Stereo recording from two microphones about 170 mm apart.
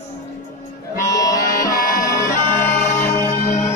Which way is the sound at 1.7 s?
55° left (ahead or behind).